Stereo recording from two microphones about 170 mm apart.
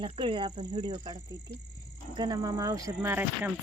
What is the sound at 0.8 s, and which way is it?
Speech, 25° right (ahead or behind).